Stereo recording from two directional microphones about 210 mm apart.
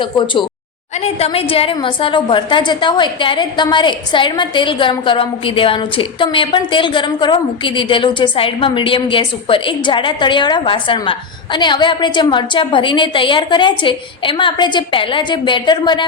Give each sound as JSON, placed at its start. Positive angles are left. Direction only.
{"t": 0.0, "sound": "a woman's voice", "side_deg": 25}